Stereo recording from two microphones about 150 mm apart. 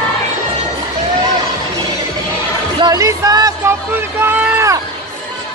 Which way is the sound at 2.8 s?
25° right (ahead or behind).